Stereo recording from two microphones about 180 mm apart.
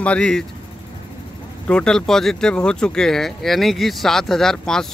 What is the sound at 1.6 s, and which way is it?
Speech, 5° left (ahead or behind).